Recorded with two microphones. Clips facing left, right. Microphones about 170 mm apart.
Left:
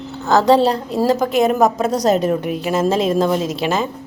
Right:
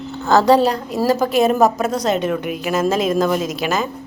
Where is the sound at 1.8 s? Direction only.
40° left (ahead or behind).